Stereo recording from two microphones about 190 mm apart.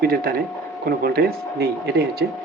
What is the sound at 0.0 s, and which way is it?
Speech, 50° right (ahead or behind).